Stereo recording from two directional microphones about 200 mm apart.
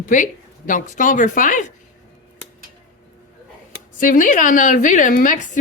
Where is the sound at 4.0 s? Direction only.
40° left (ahead or behind).